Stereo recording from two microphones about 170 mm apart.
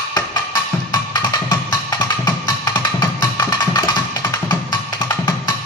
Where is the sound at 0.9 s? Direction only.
25° left (ahead or behind).